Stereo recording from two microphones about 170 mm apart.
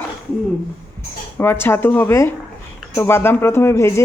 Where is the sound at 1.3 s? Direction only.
15° left (ahead or behind).